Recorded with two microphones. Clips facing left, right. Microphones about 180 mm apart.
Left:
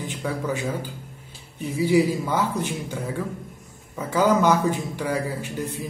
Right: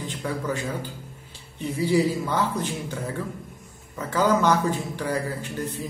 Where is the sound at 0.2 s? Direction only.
10° left (ahead or behind).